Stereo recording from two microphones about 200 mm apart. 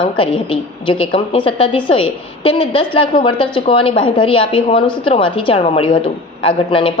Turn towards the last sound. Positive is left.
turn(degrees=25)  # may be behind; listen again after turning